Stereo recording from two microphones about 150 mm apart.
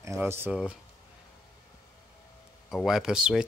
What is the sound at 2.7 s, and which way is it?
Speech, centre (ahead or behind).